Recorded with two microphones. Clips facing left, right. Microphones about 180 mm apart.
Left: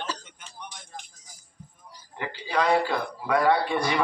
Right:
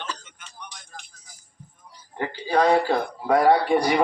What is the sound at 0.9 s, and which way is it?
Music, 25° left (ahead or behind).